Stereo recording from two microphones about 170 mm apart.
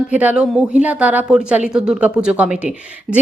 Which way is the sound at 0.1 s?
10° right (ahead or behind).